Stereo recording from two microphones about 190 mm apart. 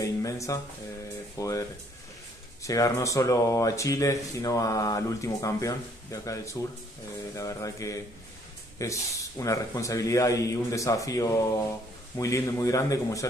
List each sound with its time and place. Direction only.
0.0 s music: 15° left (ahead or behind)
1.4 s speech: 15° left (ahead or behind)